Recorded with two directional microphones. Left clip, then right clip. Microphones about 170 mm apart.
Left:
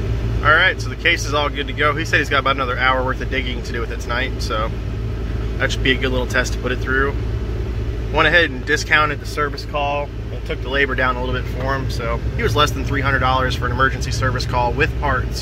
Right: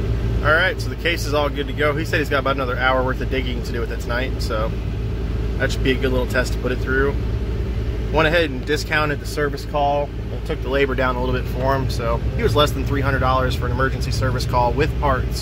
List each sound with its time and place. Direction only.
0.4 s speech: 15° right (ahead or behind)
9.1 s speech: 30° right (ahead or behind)